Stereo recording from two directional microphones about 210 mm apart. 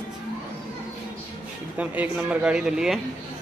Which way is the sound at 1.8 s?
5° right (ahead or behind).